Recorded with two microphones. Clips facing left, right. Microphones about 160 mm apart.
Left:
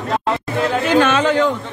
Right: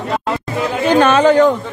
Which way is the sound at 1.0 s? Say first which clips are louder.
Right 5 dB; 40° right (ahead or behind).